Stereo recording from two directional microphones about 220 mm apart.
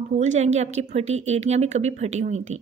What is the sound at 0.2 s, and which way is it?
Speech, 30° right (ahead or behind).